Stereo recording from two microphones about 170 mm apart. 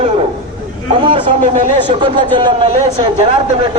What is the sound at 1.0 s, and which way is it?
Speech, 30° right (ahead or behind).